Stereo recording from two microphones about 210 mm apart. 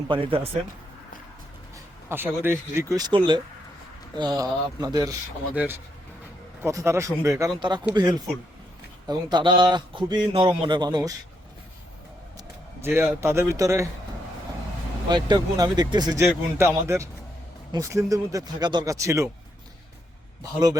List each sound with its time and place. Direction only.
0.1 s speech: 25° right (ahead or behind)
1.7 s speech: 10° right (ahead or behind)
6.6 s speech: 15° right (ahead or behind)
9.0 s speech: 20° right (ahead or behind)
12.8 s speech: 10° right (ahead or behind)
15.1 s speech: 20° right (ahead or behind)
20.4 s speech: 20° right (ahead or behind)